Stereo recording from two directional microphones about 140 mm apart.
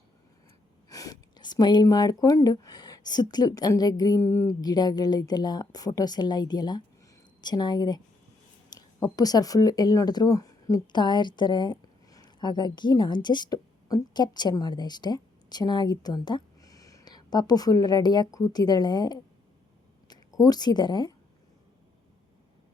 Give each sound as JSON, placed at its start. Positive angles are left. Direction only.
{"t": 0.9, "sound": "a woman's voice", "side_deg": 25}